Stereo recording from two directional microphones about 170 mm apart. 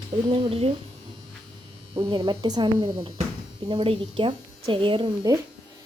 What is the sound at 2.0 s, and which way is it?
Speech, 30° right (ahead or behind).